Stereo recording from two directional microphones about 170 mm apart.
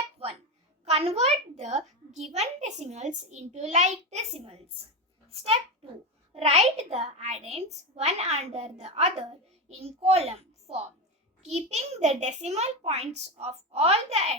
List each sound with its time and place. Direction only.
0.9 s a child's voice: 35° right (ahead or behind)